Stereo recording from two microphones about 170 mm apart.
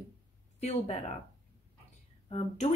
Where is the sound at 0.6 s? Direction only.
40° left (ahead or behind).